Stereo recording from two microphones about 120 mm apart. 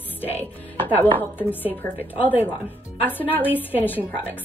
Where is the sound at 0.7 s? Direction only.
15° left (ahead or behind).